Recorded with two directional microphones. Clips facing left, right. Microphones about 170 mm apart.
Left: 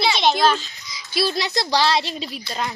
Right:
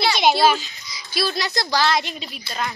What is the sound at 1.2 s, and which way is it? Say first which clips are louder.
Speech: left 2 dB; 25° left (ahead or behind).